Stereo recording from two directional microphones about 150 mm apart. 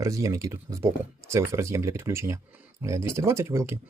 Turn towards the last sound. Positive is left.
turn(degrees=-20)  # may be behind; listen again after turning